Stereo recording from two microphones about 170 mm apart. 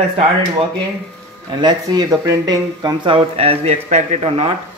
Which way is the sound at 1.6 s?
25° right (ahead or behind).